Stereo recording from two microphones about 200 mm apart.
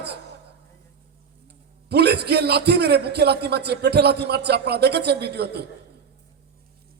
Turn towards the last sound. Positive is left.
turn(degrees=-55)  # may be behind; listen again after turning